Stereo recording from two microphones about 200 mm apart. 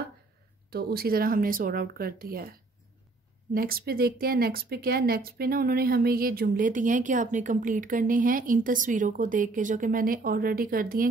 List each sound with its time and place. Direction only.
0.7 s speech: 50° right (ahead or behind)